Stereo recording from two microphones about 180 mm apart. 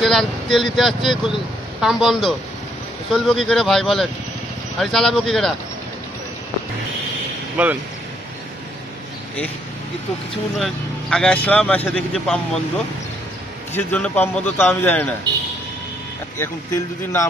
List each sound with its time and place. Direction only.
0.0 s speech: centre (ahead or behind)
7.5 s speech: 10° right (ahead or behind)
10.6 s speech: 5° left (ahead or behind)
13.7 s speech: 10° left (ahead or behind)
16.3 s speech: 15° left (ahead or behind)